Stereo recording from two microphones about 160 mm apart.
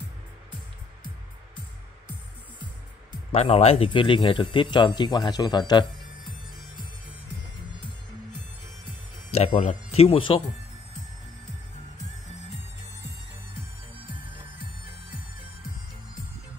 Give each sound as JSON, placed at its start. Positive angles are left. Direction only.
{"t": 3.3, "sound": "speech", "side_deg": 40}
{"t": 9.3, "sound": "speech", "side_deg": 45}